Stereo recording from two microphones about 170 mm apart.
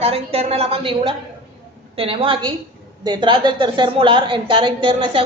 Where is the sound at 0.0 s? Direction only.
35° right (ahead or behind).